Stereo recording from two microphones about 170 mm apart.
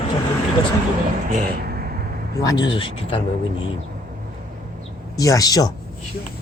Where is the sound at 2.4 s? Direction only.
25° left (ahead or behind).